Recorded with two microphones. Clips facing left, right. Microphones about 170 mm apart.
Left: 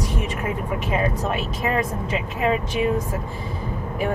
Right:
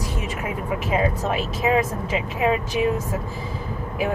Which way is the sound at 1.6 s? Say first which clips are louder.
Right 4 dB; 5° right (ahead or behind).